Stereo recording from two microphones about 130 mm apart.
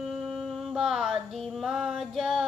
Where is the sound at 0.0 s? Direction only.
5° right (ahead or behind).